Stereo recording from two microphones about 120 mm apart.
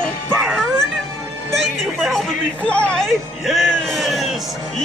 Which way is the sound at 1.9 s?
Centre (ahead or behind).